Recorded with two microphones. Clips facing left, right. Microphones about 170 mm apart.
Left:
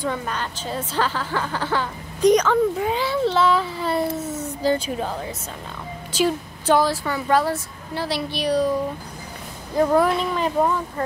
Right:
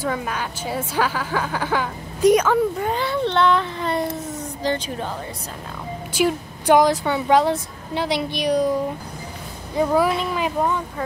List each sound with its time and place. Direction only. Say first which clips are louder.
0.0 s a woman's voice: right 1 dB; 5° right (ahead or behind)
6.1 s a woman's voice: right 1 dB; 15° right (ahead or behind)
9.8 s speech: left 1 dB; centre (ahead or behind)